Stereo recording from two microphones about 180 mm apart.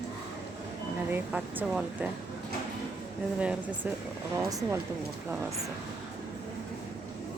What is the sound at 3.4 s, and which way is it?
Speech, 5° right (ahead or behind).